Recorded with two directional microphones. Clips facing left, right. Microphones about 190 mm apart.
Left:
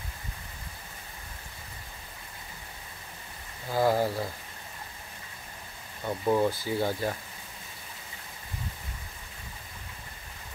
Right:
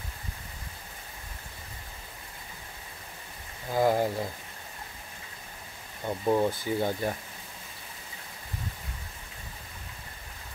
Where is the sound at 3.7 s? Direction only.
15° right (ahead or behind).